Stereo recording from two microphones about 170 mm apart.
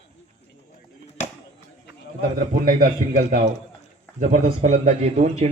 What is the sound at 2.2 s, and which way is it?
A man's voice, 55° right (ahead or behind).